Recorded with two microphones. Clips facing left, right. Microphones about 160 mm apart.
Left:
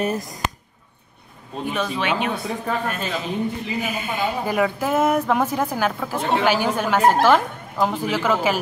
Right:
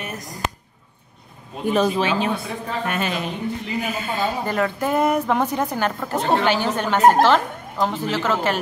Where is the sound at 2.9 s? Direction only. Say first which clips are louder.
Right 3 dB; 70° right (ahead or behind).